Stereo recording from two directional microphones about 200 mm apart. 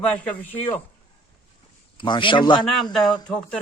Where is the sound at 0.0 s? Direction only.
5° left (ahead or behind).